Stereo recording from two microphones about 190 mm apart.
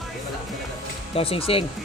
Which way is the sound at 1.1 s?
30° left (ahead or behind).